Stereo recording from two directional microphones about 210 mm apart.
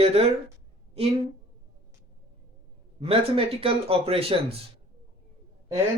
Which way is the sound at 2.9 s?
25° right (ahead or behind).